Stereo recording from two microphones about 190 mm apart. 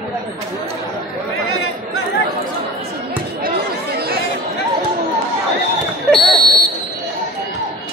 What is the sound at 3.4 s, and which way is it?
Chatter, 55° right (ahead or behind).